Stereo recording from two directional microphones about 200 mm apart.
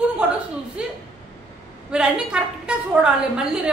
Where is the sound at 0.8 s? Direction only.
5° right (ahead or behind).